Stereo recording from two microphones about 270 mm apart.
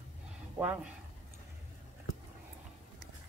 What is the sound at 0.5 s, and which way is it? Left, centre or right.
Speech, centre.